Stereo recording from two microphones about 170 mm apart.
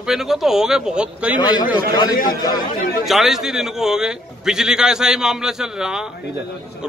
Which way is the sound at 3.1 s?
Centre (ahead or behind).